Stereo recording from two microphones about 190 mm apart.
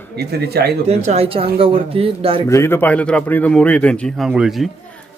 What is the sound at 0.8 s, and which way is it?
Speech, 35° right (ahead or behind).